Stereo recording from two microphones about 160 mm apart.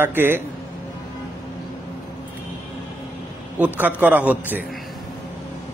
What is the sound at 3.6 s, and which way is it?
Speech, 10° right (ahead or behind).